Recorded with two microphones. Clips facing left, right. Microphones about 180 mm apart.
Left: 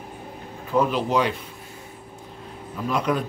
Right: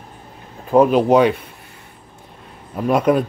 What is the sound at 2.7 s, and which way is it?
Speech, 55° right (ahead or behind).